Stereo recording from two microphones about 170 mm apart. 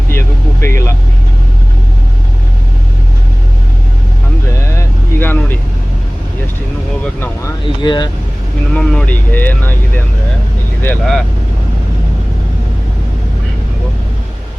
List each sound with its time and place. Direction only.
0.6 s speech: 15° left (ahead or behind)
4.8 s vehicle: 10° left (ahead or behind)
7.0 s vehicle: 10° left (ahead or behind)
7.6 s vehicle: 25° left (ahead or behind)
8.7 s vehicle: 5° left (ahead or behind)
10.8 s speech: 5° left (ahead or behind)